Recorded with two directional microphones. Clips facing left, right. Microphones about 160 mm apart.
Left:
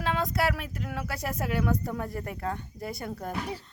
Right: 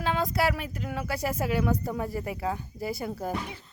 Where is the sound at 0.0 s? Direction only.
Centre (ahead or behind).